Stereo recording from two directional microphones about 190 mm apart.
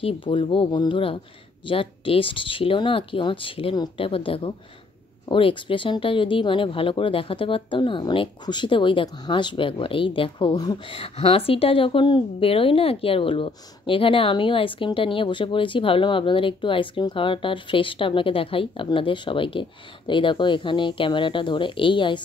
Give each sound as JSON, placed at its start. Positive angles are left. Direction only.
{"t": 0.0, "sound": "speech", "side_deg": 30}